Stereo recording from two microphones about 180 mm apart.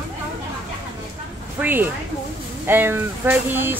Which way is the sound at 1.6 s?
10° right (ahead or behind).